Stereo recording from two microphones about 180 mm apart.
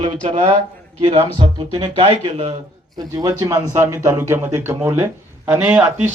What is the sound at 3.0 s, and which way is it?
Speech, 20° right (ahead or behind).